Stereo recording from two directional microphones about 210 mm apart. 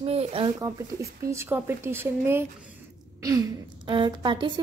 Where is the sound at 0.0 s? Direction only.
25° right (ahead or behind).